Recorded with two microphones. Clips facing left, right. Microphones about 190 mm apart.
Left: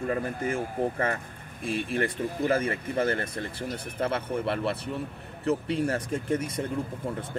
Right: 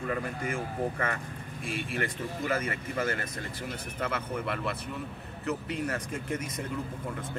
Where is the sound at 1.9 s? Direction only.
35° left (ahead or behind).